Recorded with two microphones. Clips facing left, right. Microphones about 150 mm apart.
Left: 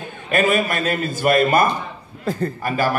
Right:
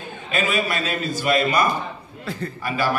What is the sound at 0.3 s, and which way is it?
A man's voice, 55° left (ahead or behind).